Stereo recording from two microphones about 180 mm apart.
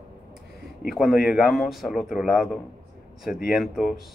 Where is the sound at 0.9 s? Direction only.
Centre (ahead or behind).